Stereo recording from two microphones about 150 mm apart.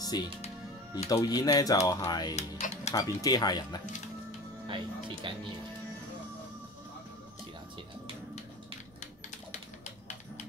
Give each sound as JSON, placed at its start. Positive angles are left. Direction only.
{"t": 0.1, "sound": "speech", "side_deg": 25}
{"t": 2.3, "sound": "speech", "side_deg": 45}
{"t": 2.9, "sound": "speech", "side_deg": 25}
{"t": 5.2, "sound": "speech", "side_deg": -35}